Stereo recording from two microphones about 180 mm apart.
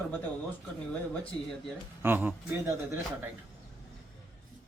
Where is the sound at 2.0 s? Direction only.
10° right (ahead or behind).